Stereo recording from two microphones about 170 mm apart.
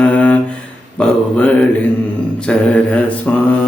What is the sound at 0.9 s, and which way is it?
Music, 5° left (ahead or behind).